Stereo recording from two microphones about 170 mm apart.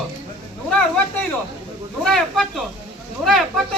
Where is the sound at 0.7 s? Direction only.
5° left (ahead or behind).